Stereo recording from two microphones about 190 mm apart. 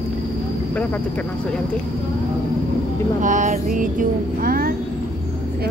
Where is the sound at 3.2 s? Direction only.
40° right (ahead or behind).